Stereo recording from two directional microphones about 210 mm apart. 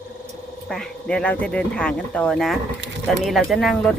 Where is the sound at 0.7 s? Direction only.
Centre (ahead or behind).